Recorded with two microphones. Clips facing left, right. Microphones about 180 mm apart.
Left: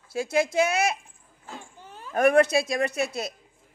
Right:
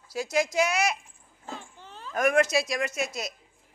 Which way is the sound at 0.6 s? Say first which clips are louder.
Left 2 dB; 55° left (ahead or behind).